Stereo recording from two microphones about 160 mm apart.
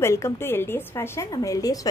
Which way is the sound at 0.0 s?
15° left (ahead or behind).